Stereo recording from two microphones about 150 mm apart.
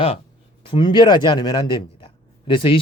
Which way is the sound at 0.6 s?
35° left (ahead or behind).